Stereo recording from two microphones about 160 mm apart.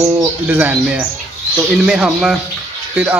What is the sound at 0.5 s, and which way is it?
A man's voice, 10° right (ahead or behind).